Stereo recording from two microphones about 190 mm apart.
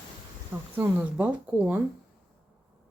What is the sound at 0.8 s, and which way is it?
Speech, 10° right (ahead or behind).